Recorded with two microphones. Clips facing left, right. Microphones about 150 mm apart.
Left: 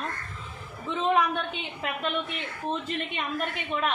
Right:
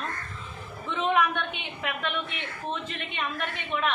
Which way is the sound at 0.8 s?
35° left (ahead or behind).